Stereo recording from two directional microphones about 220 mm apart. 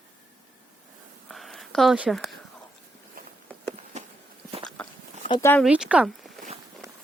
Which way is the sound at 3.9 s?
30° right (ahead or behind).